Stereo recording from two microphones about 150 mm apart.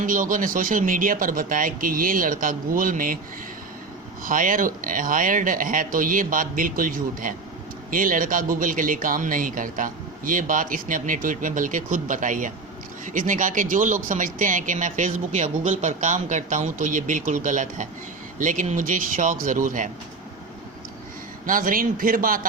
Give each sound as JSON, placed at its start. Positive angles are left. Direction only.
{"t": 0.0, "sound": "speech", "side_deg": -65}
{"t": 4.2, "sound": "speech", "side_deg": -65}
{"t": 21.4, "sound": "a man's voice", "side_deg": -65}